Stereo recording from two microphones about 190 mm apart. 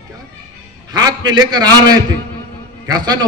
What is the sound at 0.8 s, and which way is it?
A man's voice, 20° right (ahead or behind).